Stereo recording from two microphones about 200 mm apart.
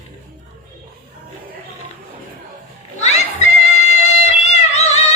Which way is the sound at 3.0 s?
35° left (ahead or behind).